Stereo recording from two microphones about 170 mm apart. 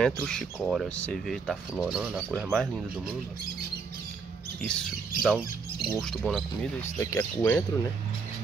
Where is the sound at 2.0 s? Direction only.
10° right (ahead or behind).